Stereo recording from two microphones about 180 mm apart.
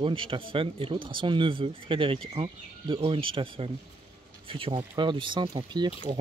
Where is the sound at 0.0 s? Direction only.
30° right (ahead or behind).